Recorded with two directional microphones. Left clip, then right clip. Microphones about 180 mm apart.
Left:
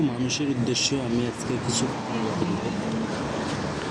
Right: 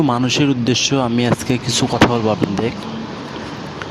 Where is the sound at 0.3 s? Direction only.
55° right (ahead or behind).